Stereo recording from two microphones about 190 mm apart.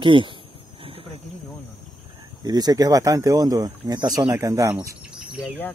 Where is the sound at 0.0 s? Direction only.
25° right (ahead or behind).